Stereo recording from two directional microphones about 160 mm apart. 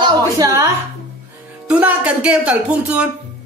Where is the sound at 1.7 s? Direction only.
5° right (ahead or behind).